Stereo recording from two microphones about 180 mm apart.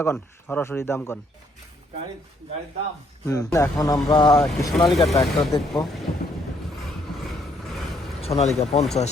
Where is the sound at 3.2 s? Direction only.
20° left (ahead or behind).